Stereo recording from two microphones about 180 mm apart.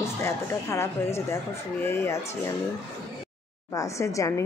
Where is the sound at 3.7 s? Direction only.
15° left (ahead or behind).